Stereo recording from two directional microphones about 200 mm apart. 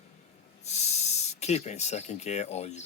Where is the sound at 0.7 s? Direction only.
35° left (ahead or behind).